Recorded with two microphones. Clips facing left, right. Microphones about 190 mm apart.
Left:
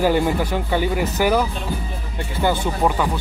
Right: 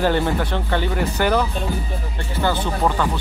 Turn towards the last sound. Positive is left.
turn(degrees=10)  # may be behind; listen again after turning